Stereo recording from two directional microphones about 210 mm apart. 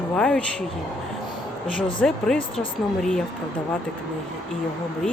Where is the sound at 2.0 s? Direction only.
5° left (ahead or behind).